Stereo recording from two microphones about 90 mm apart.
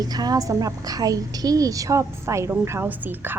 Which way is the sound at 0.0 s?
45° right (ahead or behind).